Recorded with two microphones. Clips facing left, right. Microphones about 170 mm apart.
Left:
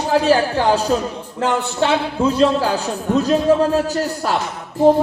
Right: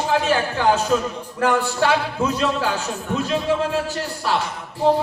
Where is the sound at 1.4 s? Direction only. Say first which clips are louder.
Left 1 dB; 20° left (ahead or behind).